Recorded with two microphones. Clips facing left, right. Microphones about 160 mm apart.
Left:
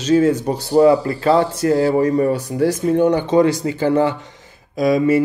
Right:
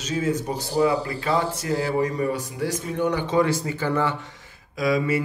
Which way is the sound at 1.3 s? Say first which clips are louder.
Left 9 dB; 60° left (ahead or behind).